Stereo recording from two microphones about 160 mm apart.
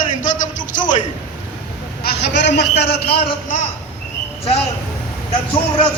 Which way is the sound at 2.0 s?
85° left.